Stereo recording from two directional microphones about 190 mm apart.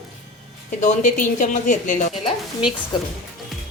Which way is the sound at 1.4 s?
40° left (ahead or behind).